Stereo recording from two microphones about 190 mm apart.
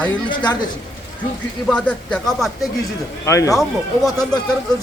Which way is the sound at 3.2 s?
15° left (ahead or behind).